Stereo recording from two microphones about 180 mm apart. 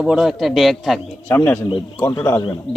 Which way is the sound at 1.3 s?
15° left (ahead or behind).